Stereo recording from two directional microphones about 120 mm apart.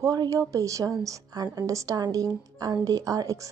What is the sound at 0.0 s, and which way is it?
A woman's voice, 30° right (ahead or behind).